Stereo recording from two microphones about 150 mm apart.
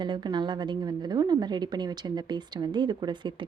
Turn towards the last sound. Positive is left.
turn(degrees=-30)  # may be behind; listen again after turning